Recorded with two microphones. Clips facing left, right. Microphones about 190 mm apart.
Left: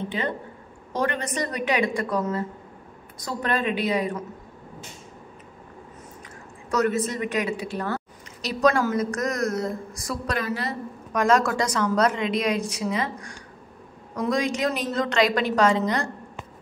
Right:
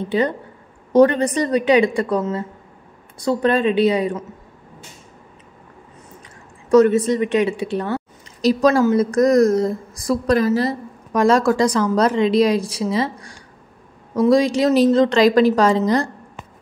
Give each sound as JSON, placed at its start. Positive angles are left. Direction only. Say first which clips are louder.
{"t": 0.9, "sound": "a woman's voice", "louder": "right 13 dB", "side_deg": -30}
{"t": 6.7, "sound": "a woman's voice", "louder": "right 10 dB", "side_deg": -30}